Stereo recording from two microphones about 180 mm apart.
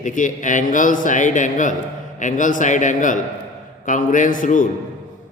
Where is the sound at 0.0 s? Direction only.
45° left (ahead or behind).